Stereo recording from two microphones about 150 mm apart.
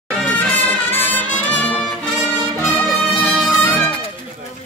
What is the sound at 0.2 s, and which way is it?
Music, 10° left (ahead or behind).